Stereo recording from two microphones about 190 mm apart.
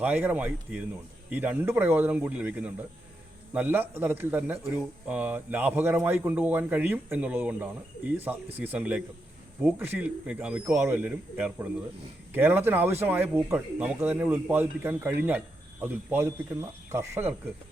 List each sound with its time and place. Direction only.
0.0 s speech: 10° right (ahead or behind)